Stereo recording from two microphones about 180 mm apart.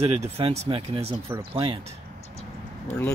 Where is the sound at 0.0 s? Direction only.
35° right (ahead or behind).